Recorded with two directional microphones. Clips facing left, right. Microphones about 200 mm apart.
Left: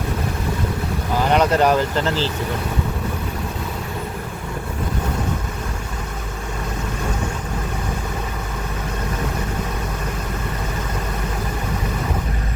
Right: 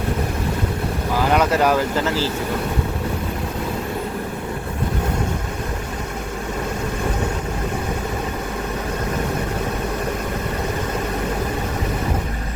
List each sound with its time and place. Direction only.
1.3 s speech: 5° right (ahead or behind)